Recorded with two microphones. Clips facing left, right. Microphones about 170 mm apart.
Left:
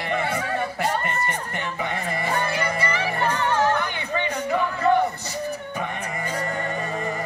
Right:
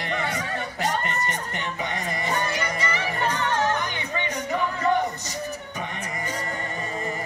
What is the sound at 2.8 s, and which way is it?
Music, 55° left (ahead or behind).